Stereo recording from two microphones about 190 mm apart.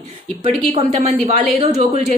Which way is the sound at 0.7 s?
30° right (ahead or behind).